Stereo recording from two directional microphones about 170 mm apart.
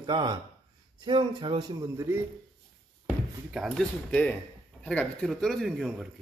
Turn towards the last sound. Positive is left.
turn(degrees=0)  # may be behind; listen again after turning